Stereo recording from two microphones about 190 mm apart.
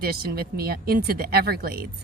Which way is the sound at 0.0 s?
55° right (ahead or behind).